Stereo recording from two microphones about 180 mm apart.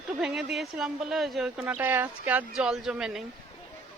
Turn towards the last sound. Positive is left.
turn(degrees=-5)  # may be behind; listen again after turning